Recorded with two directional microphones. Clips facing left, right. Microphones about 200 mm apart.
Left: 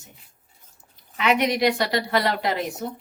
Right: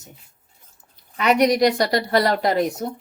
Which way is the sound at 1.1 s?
40° right (ahead or behind).